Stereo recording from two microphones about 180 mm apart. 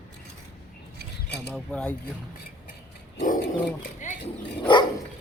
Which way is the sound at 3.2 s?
45° left (ahead or behind).